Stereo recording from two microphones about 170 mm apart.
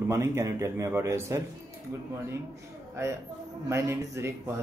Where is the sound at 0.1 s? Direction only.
15° right (ahead or behind).